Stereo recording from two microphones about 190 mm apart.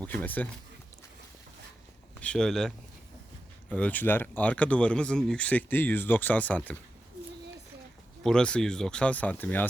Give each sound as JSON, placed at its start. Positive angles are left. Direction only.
{"t": 0.0, "sound": "speech", "side_deg": 10}
{"t": 2.2, "sound": "speech", "side_deg": 5}
{"t": 8.2, "sound": "speech", "side_deg": 5}